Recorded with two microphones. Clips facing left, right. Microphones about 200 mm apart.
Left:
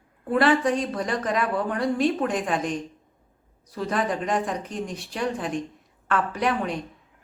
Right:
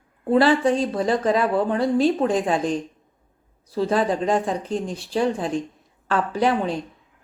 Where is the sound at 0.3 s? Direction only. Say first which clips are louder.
Right 3 dB; 30° right (ahead or behind).